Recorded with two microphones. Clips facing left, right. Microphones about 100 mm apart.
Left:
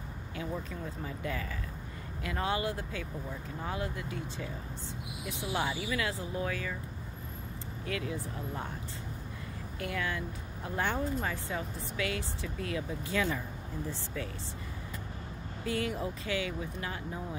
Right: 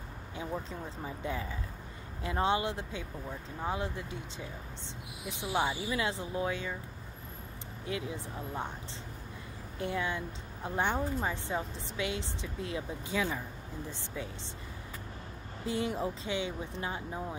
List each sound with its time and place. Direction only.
0.4 s speech: 25° right (ahead or behind)
7.8 s speech: 20° right (ahead or behind)
9.8 s speech: 25° right (ahead or behind)
15.6 s speech: 25° right (ahead or behind)